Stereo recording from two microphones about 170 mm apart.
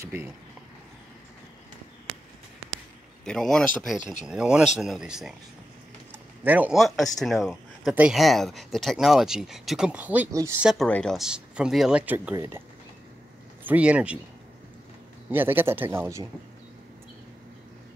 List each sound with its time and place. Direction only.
0.0 s a man's voice: 10° right (ahead or behind)
3.3 s speech: 5° left (ahead or behind)
4.0 s speech: 45° left (ahead or behind)
4.3 s speech: 5° right (ahead or behind)
6.4 s speech: 10° right (ahead or behind)
10.6 s a man's voice: centre (ahead or behind)
13.7 s a man's voice: 10° right (ahead or behind)
15.2 s a man's voice: 10° right (ahead or behind)